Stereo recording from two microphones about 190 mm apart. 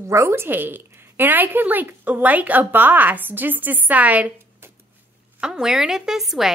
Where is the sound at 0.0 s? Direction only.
15° right (ahead or behind).